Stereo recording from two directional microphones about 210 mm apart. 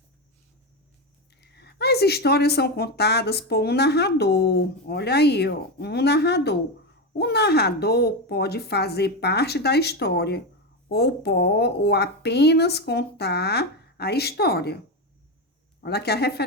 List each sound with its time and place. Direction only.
1.4 s speech: 50° left (ahead or behind)
15.8 s speech: 50° left (ahead or behind)